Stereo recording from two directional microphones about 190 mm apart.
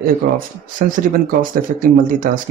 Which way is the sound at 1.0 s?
45° right (ahead or behind).